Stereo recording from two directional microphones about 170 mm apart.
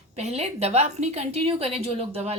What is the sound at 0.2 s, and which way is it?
A woman's voice, 40° right (ahead or behind).